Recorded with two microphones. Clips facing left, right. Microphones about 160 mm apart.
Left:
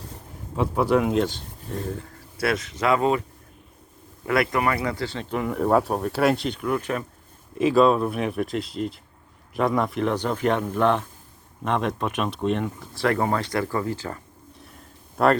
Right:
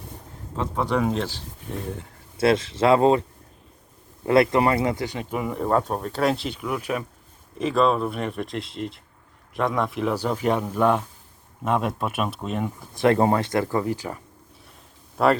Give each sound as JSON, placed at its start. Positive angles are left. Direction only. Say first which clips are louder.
{"t": 0.5, "sound": "speech", "louder": "left 4 dB", "side_deg": 10}
{"t": 2.0, "sound": "speech", "louder": "right 4 dB", "side_deg": -25}
{"t": 4.3, "sound": "speech", "louder": "right 4 dB", "side_deg": -25}
{"t": 7.6, "sound": "speech", "louder": "left 3 dB", "side_deg": 5}
{"t": 12.9, "sound": "speech", "louder": "right 4 dB", "side_deg": -20}
{"t": 15.2, "sound": "speech", "louder": "even", "side_deg": 0}